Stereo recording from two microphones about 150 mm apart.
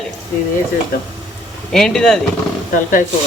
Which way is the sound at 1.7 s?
5° left (ahead or behind).